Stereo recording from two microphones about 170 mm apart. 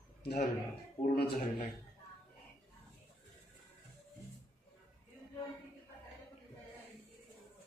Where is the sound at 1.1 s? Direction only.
60° left (ahead or behind).